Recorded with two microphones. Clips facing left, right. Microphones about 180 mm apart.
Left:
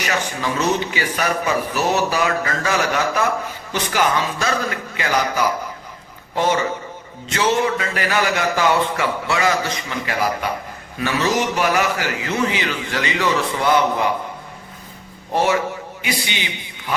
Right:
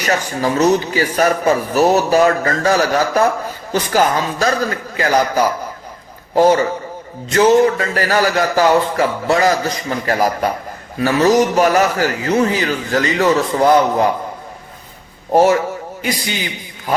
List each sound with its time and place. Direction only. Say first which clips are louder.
0.0 s speech: right 5 dB; 40° right (ahead or behind)
15.3 s speech: right 6 dB; 40° right (ahead or behind)